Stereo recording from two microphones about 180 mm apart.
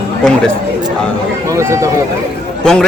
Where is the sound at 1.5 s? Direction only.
15° right (ahead or behind).